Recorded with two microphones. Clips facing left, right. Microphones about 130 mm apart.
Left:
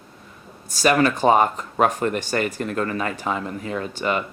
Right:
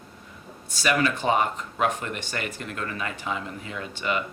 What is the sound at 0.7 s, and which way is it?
Speech, 40° left (ahead or behind).